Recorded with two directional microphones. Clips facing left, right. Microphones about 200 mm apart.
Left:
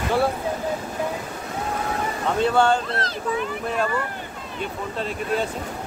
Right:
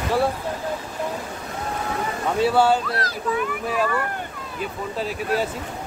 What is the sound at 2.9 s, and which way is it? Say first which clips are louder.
Speech: right 1 dB; 25° left (ahead or behind).